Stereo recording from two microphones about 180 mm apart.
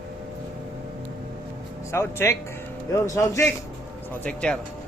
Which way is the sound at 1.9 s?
15° left (ahead or behind).